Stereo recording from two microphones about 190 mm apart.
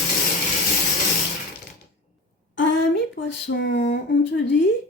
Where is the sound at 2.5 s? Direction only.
70° left (ahead or behind).